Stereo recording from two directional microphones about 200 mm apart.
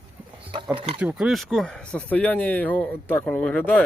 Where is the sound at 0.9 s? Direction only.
5° right (ahead or behind).